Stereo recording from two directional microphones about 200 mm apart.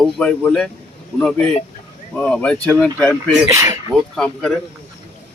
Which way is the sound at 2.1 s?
5° left (ahead or behind).